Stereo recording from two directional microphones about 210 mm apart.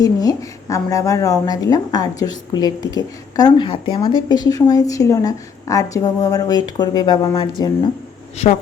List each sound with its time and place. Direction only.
0.0 s a woman's voice: 20° left (ahead or behind)